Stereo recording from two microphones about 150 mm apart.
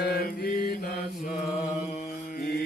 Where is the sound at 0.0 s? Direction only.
90° left.